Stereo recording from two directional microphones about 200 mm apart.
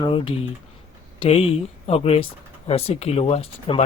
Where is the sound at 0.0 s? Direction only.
25° left (ahead or behind).